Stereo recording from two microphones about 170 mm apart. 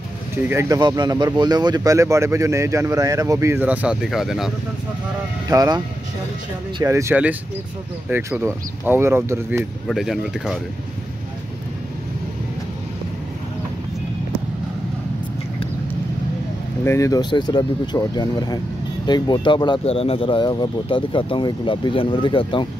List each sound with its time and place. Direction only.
0.4 s speech: 15° right (ahead or behind)
0.7 s speech: 25° right (ahead or behind); by 4.5 s centre (ahead or behind)
5.5 s speech: 20° right (ahead or behind)
6.8 s speech: 15° right (ahead or behind)
9.8 s speech: centre (ahead or behind)
16.8 s speech: 15° left (ahead or behind)